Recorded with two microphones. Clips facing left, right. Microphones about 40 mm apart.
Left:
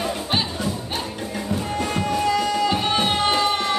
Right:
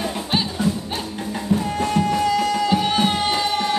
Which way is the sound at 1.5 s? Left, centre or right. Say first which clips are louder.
Right 5 dB; centre.